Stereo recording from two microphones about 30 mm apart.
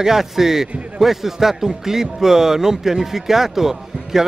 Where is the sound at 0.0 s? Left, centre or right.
Centre.